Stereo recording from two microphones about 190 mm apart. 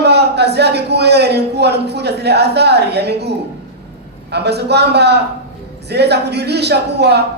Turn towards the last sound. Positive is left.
turn(degrees=-60)  # may be behind; listen again after turning